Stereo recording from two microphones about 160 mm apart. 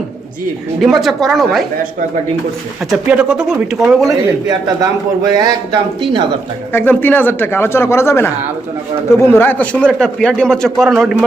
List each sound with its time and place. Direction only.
0.8 s speech: centre (ahead or behind)
2.9 s speech: 5° right (ahead or behind)
5.3 s speech: 25° right (ahead or behind)
6.7 s speech: 10° left (ahead or behind)